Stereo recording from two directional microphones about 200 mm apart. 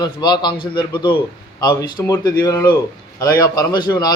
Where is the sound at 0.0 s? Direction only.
20° left (ahead or behind).